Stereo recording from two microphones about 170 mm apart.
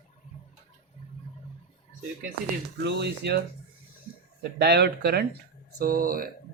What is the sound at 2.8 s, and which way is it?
Speech, 80° right.